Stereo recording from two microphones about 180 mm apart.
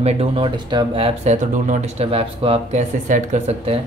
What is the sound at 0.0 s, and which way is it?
Speech, 30° right (ahead or behind).